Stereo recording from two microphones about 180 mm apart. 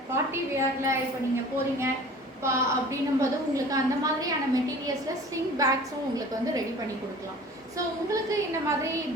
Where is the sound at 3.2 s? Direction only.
20° right (ahead or behind).